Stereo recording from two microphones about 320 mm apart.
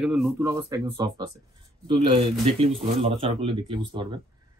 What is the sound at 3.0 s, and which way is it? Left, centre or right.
Speech, centre.